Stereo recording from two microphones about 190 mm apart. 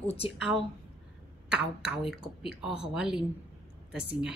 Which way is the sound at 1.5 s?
5° right (ahead or behind).